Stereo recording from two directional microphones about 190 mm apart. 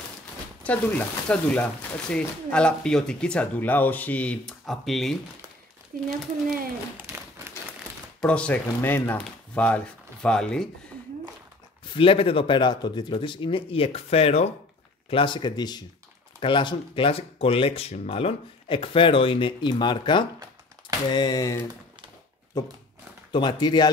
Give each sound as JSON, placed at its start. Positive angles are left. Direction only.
{"t": 0.7, "sound": "speech", "side_deg": 5}
{"t": 8.2, "sound": "speech", "side_deg": 5}
{"t": 11.9, "sound": "speech", "side_deg": 30}
{"t": 23.3, "sound": "speech", "side_deg": 25}